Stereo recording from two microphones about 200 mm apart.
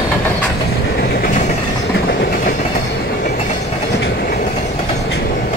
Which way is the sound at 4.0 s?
55° left (ahead or behind).